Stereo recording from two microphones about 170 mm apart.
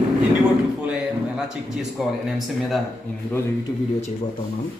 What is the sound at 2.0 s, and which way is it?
Speech, centre (ahead or behind).